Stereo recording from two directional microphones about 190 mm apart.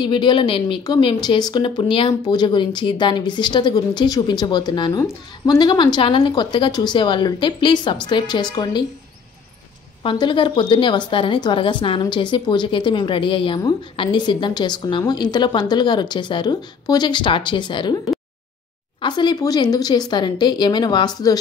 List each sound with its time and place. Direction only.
0.0 s speech: 25° left (ahead or behind)
10.0 s speech: 25° left (ahead or behind)